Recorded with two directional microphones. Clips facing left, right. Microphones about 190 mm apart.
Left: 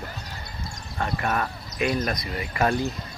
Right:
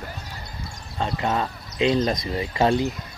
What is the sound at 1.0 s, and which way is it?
Speech, 20° right (ahead or behind).